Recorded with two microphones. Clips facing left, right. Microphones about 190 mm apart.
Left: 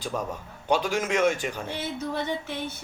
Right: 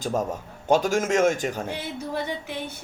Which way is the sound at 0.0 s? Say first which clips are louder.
Right 5 dB; 45° right (ahead or behind).